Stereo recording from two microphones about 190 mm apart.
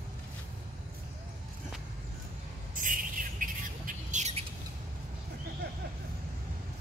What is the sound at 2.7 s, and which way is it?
Squawk, 45° right (ahead or behind).